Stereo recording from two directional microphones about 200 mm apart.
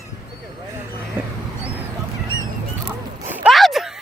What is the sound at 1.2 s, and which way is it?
Mouse, 10° right (ahead or behind).